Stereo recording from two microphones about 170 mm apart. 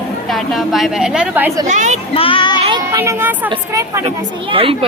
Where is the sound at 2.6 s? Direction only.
30° right (ahead or behind).